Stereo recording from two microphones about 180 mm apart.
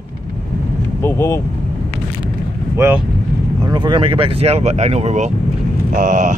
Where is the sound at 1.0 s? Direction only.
15° left (ahead or behind).